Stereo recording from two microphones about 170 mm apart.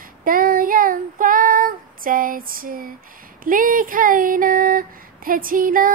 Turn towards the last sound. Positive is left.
turn(degrees=-55)  # may be behind; listen again after turning